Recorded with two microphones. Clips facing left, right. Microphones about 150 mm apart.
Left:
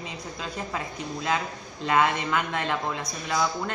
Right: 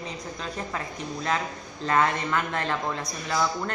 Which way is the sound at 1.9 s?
15° left (ahead or behind).